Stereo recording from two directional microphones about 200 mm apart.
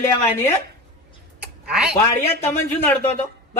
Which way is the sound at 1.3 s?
5° right (ahead or behind).